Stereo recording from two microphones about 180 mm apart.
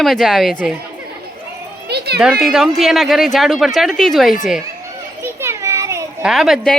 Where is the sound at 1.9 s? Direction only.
65° right (ahead or behind).